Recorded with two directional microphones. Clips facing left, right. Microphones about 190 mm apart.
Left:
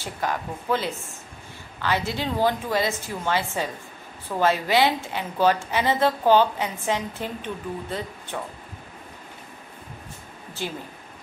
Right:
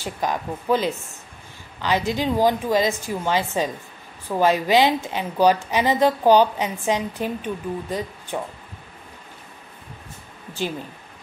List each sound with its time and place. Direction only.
0.0 s a woman's voice: 15° right (ahead or behind)
10.6 s a woman's voice: 15° right (ahead or behind)